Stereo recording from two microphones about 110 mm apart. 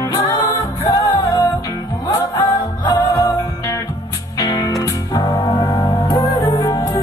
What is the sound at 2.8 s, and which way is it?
Music, 40° left (ahead or behind).